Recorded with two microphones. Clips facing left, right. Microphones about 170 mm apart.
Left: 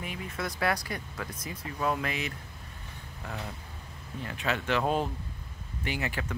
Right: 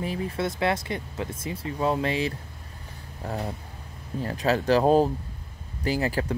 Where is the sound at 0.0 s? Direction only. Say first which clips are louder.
Right 8 dB; 35° right (ahead or behind).